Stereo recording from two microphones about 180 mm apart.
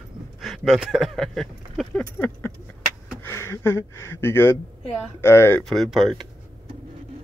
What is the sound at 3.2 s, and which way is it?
Speech, 15° left (ahead or behind).